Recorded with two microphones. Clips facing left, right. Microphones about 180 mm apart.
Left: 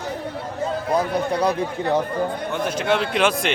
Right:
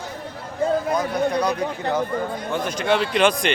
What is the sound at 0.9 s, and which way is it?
Speech, 30° left (ahead or behind).